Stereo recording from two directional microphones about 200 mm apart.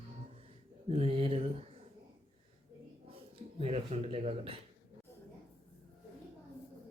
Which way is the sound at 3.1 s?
30° right (ahead or behind).